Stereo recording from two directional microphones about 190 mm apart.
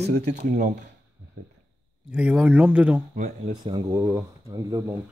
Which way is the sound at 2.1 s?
5° right (ahead or behind).